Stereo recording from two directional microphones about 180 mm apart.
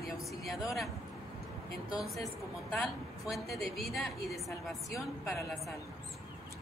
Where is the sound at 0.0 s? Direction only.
Centre (ahead or behind).